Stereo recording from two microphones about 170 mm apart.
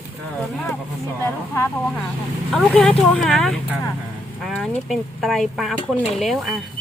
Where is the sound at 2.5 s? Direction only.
Centre (ahead or behind).